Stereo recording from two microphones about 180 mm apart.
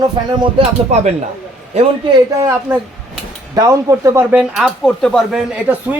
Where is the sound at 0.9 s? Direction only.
35° right (ahead or behind).